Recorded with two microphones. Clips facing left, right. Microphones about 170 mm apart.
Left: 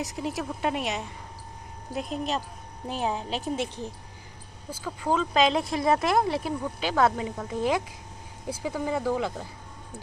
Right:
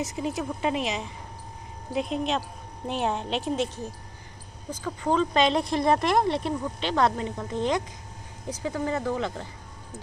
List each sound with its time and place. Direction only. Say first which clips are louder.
0.0 s speech: right 2 dB; centre (ahead or behind)
2.0 s speech: right 2 dB; centre (ahead or behind)
3.6 s speech: right 1 dB; 15° left (ahead or behind)